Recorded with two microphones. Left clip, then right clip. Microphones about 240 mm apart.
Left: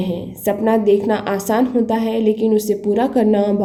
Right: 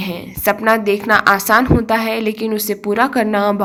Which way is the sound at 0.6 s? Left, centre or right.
Centre.